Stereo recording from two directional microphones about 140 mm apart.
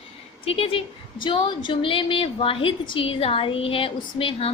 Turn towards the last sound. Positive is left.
turn(degrees=40)  # may be behind; listen again after turning